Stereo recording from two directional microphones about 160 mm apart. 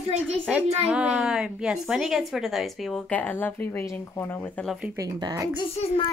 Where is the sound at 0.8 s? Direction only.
5° right (ahead or behind).